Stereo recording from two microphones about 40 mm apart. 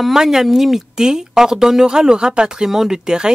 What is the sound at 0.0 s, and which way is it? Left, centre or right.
Speech, centre.